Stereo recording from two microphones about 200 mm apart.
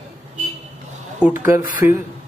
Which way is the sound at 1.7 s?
40° left (ahead or behind).